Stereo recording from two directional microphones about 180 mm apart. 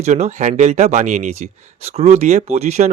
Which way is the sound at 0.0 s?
40° right (ahead or behind).